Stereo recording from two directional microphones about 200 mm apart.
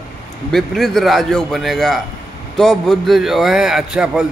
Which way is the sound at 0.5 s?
Centre (ahead or behind).